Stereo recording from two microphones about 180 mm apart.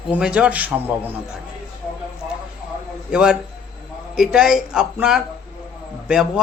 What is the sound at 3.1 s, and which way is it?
A man's voice, 5° right (ahead or behind).